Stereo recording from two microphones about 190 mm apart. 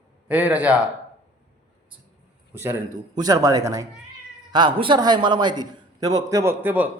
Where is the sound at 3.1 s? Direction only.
20° right (ahead or behind).